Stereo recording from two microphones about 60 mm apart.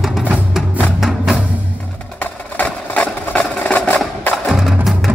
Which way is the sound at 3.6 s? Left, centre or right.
Left.